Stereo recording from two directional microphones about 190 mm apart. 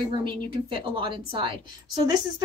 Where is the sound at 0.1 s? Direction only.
25° right (ahead or behind).